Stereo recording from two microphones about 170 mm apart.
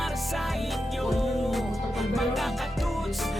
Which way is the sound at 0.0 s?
Centre (ahead or behind).